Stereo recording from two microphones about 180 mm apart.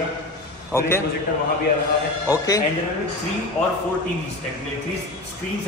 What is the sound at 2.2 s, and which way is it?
Speech, 20° left (ahead or behind).